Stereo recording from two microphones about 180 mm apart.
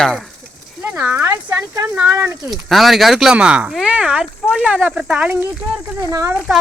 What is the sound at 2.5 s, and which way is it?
Speech, centre (ahead or behind).